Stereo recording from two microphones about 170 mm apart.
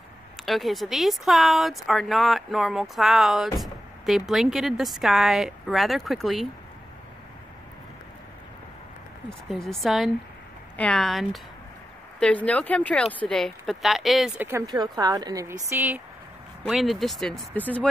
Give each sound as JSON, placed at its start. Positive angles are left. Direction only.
{"t": 0.5, "sound": "speech", "side_deg": 0}
{"t": 9.3, "sound": "speech", "side_deg": 0}
{"t": 14.7, "sound": "a woman's voice", "side_deg": -25}
{"t": 16.6, "sound": "speech", "side_deg": 0}